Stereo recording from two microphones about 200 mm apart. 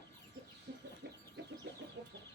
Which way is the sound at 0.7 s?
60° right (ahead or behind).